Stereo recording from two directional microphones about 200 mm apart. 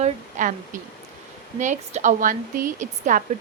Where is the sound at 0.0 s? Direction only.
40° right (ahead or behind).